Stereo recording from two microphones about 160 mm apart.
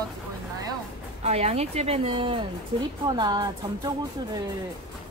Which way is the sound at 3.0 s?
25° right (ahead or behind).